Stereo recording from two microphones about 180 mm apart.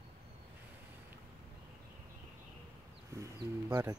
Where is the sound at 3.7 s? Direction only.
15° right (ahead or behind).